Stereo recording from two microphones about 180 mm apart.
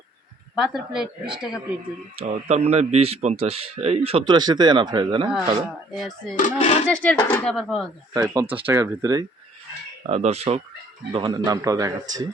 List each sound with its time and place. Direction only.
0.5 s speech: 5° right (ahead or behind)
2.1 s speech: 40° right (ahead or behind)
5.9 s speech: centre (ahead or behind)
6.3 s speech: 45° left (ahead or behind)
6.8 s speech: 5° left (ahead or behind)
8.1 s a man's voice: 20° right (ahead or behind)
10.1 s speech: 35° right (ahead or behind)
11.1 s a man's voice: 25° right (ahead or behind)